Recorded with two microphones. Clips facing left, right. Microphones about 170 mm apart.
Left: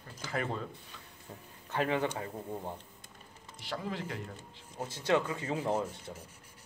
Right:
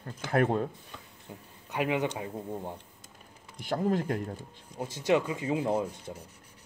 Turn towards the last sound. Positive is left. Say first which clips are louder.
# right 3 dB
turn(degrees=-15)  # may be behind; listen again after turning